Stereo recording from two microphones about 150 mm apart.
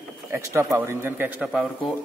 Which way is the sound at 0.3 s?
20° right (ahead or behind).